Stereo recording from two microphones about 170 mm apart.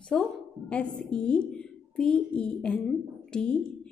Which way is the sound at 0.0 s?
5° left (ahead or behind).